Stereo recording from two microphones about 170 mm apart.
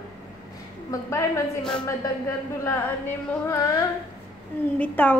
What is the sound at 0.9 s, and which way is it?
Speech, 15° left (ahead or behind).